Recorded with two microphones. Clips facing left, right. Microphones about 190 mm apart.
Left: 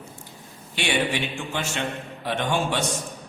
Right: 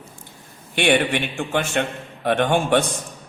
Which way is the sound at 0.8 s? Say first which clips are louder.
Right 6 dB; 60° right (ahead or behind).